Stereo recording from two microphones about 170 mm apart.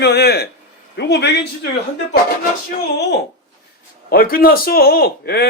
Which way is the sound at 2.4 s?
60° left (ahead or behind).